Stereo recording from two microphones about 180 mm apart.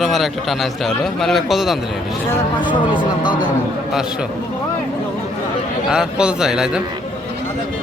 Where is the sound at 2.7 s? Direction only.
30° left (ahead or behind).